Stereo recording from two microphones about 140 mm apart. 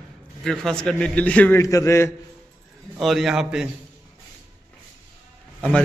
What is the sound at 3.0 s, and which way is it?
Speech, centre (ahead or behind).